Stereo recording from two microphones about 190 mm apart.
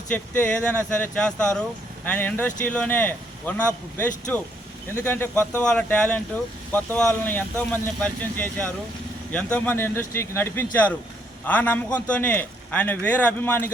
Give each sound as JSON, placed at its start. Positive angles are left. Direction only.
{"t": 0.1, "sound": "a man's voice", "side_deg": 10}